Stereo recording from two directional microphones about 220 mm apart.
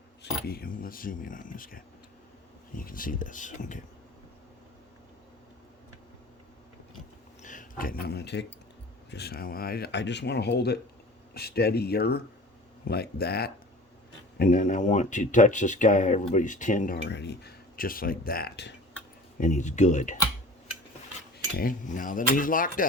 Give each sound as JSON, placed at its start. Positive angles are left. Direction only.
{"t": 0.2, "sound": "speech", "side_deg": 45}
{"t": 7.4, "sound": "speech", "side_deg": 35}
{"t": 19.4, "sound": "speech", "side_deg": 35}
{"t": 21.5, "sound": "speech", "side_deg": 40}